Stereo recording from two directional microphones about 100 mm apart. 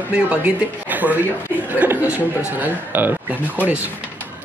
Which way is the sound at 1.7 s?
15° right (ahead or behind).